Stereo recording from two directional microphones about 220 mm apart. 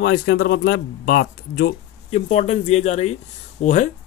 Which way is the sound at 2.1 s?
30° left (ahead or behind).